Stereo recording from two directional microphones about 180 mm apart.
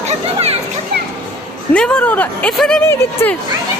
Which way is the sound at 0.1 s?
35° right (ahead or behind).